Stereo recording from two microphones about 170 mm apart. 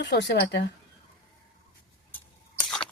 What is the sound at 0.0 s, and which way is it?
Speech, 90° left.